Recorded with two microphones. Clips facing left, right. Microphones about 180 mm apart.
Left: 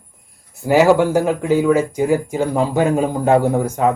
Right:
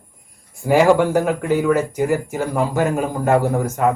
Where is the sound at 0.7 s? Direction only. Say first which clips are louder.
Left 1 dB; 5° left (ahead or behind).